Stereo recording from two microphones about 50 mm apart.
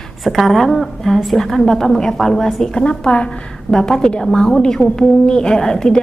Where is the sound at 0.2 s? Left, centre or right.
Centre.